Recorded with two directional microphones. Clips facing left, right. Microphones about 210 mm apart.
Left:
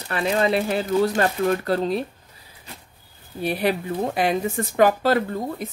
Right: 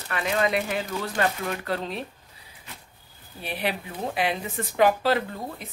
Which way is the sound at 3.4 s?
40° left (ahead or behind).